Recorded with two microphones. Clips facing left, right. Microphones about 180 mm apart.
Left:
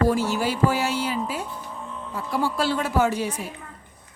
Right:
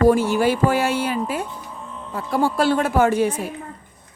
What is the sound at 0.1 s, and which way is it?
Speech, 55° right (ahead or behind).